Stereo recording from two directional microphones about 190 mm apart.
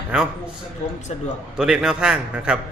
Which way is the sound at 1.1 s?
35° left (ahead or behind).